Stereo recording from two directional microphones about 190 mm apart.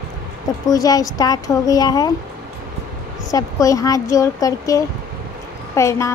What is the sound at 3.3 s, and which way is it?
Speech, 15° left (ahead or behind).